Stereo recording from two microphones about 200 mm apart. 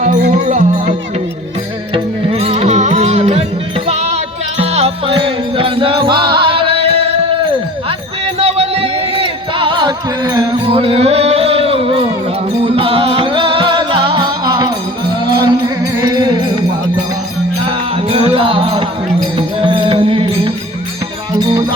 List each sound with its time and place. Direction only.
0.0 s music: 40° right (ahead or behind)
8.4 s music: 30° right (ahead or behind)
17.7 s music: 30° right (ahead or behind)